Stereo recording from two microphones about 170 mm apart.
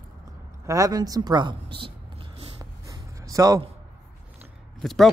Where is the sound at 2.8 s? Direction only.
20° right (ahead or behind).